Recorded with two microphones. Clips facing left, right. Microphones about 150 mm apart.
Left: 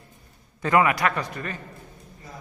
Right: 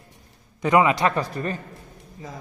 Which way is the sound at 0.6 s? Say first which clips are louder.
Right 2 dB; 20° right (ahead or behind).